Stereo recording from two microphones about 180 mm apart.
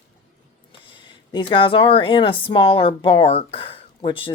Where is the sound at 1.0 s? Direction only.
25° left (ahead or behind).